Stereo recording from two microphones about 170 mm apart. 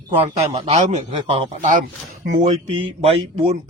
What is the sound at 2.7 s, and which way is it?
Speech, 35° right (ahead or behind).